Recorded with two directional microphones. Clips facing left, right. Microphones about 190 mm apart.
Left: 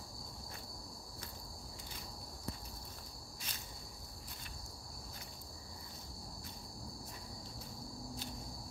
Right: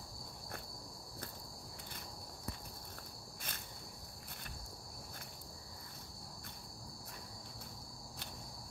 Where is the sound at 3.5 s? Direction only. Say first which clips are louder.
Right 3 dB; 55° right (ahead or behind).